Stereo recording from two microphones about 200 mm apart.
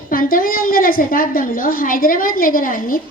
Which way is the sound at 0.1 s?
45° left (ahead or behind).